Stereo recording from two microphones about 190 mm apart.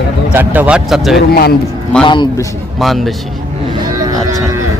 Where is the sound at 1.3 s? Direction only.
55° left (ahead or behind).